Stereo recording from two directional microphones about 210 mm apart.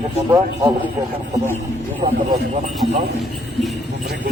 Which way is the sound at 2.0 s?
35° right (ahead or behind).